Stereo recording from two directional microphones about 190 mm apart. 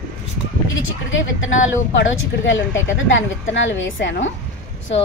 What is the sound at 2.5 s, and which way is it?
A woman's voice, 80° left.